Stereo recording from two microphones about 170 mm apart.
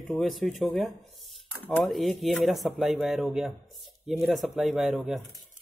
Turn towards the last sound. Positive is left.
turn(degrees=0)  # may be behind; listen again after turning